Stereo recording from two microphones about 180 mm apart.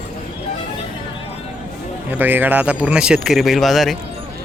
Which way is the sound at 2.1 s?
10° right (ahead or behind).